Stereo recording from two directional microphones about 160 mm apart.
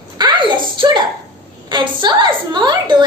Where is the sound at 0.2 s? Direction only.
30° right (ahead or behind).